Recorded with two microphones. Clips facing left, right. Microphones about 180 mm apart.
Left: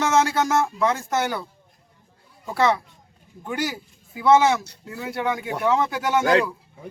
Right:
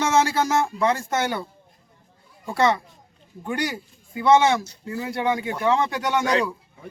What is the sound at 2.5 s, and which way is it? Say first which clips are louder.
Speech: even; centre (ahead or behind).